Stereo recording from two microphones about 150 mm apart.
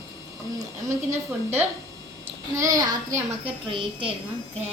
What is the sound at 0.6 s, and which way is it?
A woman's voice, 20° right (ahead or behind).